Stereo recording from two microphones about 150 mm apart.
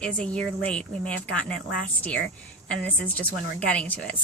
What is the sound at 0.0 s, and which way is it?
Speech, 5° left (ahead or behind).